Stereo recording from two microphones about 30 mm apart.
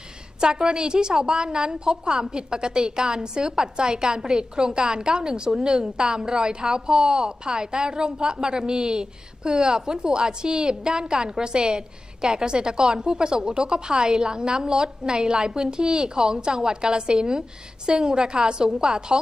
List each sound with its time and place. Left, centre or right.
0.4 s a woman's voice: right
2.3 s a woman's voice: right